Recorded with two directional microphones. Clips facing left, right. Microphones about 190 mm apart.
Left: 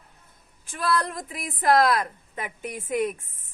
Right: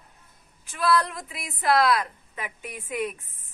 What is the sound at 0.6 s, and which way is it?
Speech, 50° left (ahead or behind).